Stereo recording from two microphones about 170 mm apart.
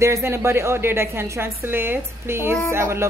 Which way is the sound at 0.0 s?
15° right (ahead or behind).